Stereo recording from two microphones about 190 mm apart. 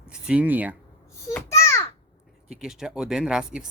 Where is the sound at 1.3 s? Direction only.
15° left (ahead or behind).